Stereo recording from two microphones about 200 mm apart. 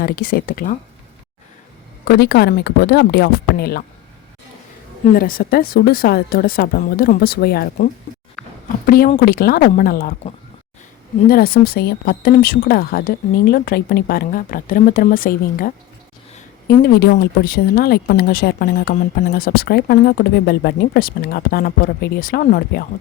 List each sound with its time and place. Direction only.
0.0 s speech: 50° left (ahead or behind)
2.0 s speech: 55° left (ahead or behind)
5.0 s speech: 45° left (ahead or behind)
8.9 s speech: 45° left (ahead or behind)
11.3 s speech: 50° left (ahead or behind)